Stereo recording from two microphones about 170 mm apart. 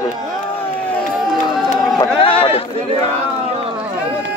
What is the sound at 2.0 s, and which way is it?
Speech, 30° left (ahead or behind).